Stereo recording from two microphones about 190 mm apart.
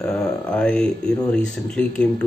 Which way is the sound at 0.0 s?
5° left (ahead or behind).